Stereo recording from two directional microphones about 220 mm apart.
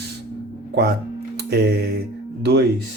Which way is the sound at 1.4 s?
45° right (ahead or behind).